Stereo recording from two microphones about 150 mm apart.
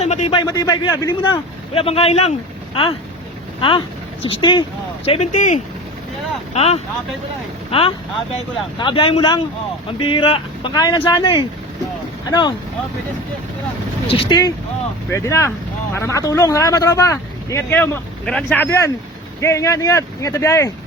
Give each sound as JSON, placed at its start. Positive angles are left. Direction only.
{"t": 0.0, "sound": "a man's voice", "side_deg": 45}
{"t": 0.3, "sound": "speech", "side_deg": 25}
{"t": 1.7, "sound": "speech", "side_deg": 40}
{"t": 3.6, "sound": "speech", "side_deg": 35}
{"t": 5.0, "sound": "speech", "side_deg": 45}
{"t": 14.1, "sound": "speech", "side_deg": 35}
{"t": 19.4, "sound": "speech", "side_deg": 20}